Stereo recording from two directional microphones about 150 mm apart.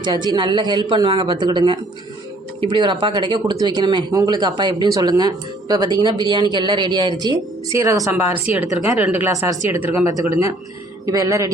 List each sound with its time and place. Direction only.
0.0 s speech: 30° right (ahead or behind)